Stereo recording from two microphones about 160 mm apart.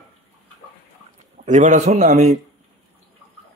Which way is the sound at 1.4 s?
50° right (ahead or behind).